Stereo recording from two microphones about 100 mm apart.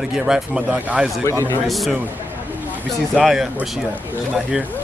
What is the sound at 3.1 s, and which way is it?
Speech, 5° right (ahead or behind).